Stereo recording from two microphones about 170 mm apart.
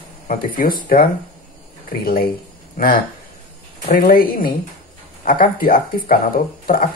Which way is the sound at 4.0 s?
60° left (ahead or behind).